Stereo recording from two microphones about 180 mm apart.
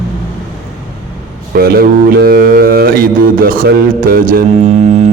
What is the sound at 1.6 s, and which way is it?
Speech, 60° right (ahead or behind).